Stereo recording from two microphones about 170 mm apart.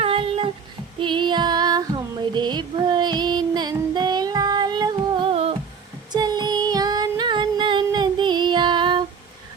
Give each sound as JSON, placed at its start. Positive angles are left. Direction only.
{"t": 0.0, "sound": "a sound", "side_deg": -35}
{"t": 0.9, "sound": "female singing", "side_deg": -30}
{"t": 2.3, "sound": "child singing", "side_deg": -25}
{"t": 6.1, "sound": "female singing", "side_deg": -25}